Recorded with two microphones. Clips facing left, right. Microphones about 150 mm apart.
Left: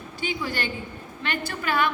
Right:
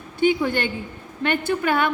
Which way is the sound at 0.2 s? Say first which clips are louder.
Right 10 dB; 55° right (ahead or behind).